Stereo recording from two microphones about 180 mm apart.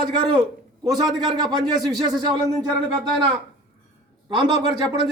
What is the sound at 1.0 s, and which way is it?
Speech, 25° right (ahead or behind).